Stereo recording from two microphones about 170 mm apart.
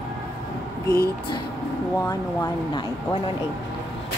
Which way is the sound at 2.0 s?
20° left (ahead or behind).